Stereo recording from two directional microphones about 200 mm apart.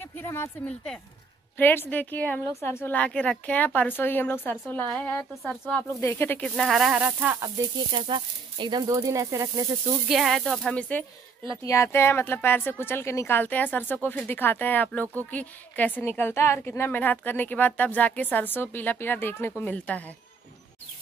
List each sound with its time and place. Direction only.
0.0 s a woman's voice: 10° left (ahead or behind); by 9.9 s 15° right (ahead or behind)
10.0 s a woman's voice: centre (ahead or behind)